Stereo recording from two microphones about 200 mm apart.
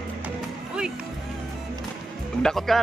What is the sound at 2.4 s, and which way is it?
Speech, centre (ahead or behind).